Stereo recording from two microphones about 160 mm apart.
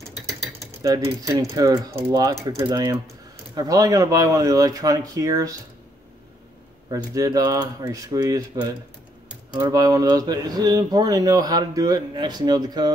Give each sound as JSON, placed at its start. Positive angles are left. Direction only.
{"t": 0.8, "sound": "speech", "side_deg": -20}
{"t": 7.2, "sound": "speech", "side_deg": -20}